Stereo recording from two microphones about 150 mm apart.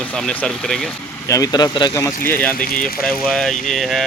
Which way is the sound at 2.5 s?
75° left (ahead or behind).